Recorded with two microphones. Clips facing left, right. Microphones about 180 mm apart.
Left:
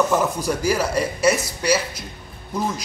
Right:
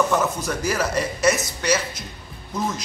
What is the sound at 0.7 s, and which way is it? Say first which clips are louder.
A man's voice: even; 10° left (ahead or behind).